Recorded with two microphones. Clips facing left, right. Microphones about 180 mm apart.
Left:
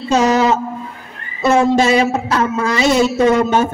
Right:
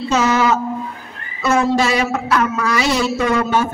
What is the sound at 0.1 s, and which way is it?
Speech, 35° left (ahead or behind).